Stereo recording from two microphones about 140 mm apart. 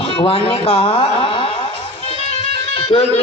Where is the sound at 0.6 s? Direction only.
45° left (ahead or behind).